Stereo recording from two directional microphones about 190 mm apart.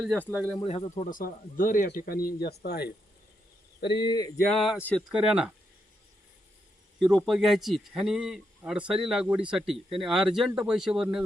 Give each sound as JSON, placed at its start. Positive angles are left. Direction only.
{"t": 0.0, "sound": "a man's voice", "side_deg": 5}
{"t": 0.6, "sound": "a sound", "side_deg": 25}
{"t": 0.9, "sound": "speech", "side_deg": 45}
{"t": 3.8, "sound": "a sound", "side_deg": 25}
{"t": 4.6, "sound": "a man's voice", "side_deg": 0}
{"t": 7.3, "sound": "a man's voice", "side_deg": 0}